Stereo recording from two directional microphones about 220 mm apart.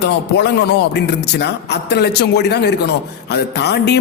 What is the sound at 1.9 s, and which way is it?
A man's voice, 50° left (ahead or behind).